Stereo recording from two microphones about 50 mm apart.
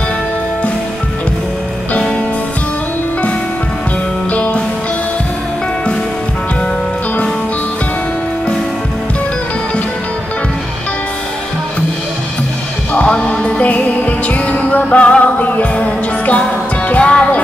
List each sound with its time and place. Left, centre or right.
4.3 s music: left
12.9 s music: left